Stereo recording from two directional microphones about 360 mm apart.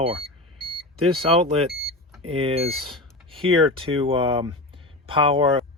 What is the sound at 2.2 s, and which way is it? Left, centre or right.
Speech, centre.